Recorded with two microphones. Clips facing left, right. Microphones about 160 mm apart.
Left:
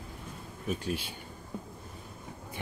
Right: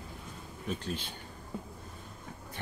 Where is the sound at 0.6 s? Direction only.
10° left (ahead or behind).